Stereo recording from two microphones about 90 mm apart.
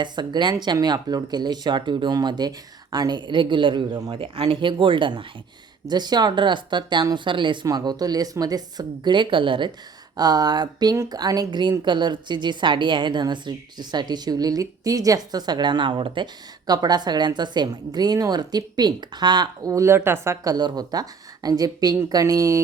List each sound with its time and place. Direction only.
0.0 s speech: 60° right (ahead or behind)
4.1 s speech: 80° right; by 5.2 s 65° right (ahead or behind)
5.9 s speech: 50° right (ahead or behind)
7.7 s a woman's voice: 45° right (ahead or behind); by 9.7 s 65° right (ahead or behind)
10.2 s a woman's voice: 45° right (ahead or behind)
19.7 s a woman's voice: 30° right (ahead or behind)
20.5 s a woman's voice: 50° right (ahead or behind)